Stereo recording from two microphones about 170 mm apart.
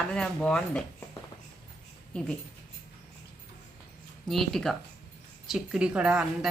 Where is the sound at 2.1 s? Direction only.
5° left (ahead or behind).